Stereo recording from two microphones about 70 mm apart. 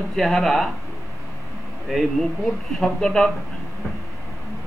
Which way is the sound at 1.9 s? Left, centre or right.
Centre.